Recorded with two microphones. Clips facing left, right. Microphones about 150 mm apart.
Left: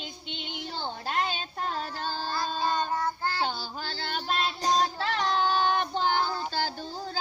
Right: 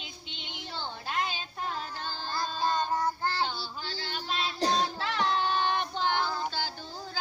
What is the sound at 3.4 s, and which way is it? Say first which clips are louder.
Female singing: left 2 dB; 40° left (ahead or behind).